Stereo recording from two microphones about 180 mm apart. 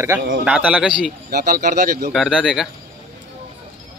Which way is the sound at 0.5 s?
5° right (ahead or behind).